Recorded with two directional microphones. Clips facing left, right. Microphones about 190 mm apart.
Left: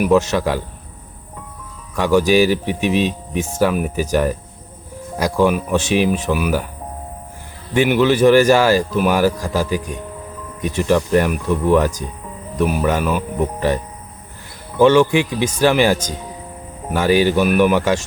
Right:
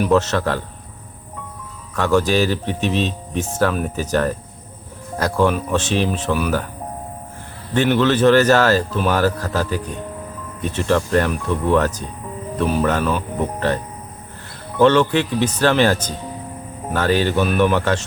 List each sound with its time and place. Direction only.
0.0 s speech: 10° left (ahead or behind)
2.0 s speech: 10° left (ahead or behind)
7.7 s speech: 10° left (ahead or behind)
14.8 s speech: 10° left (ahead or behind)